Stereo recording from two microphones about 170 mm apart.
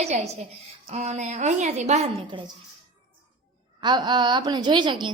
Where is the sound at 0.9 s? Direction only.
40° right (ahead or behind).